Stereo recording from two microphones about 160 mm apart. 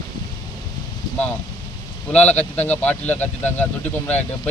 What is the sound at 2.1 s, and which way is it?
Speech, 40° left (ahead or behind).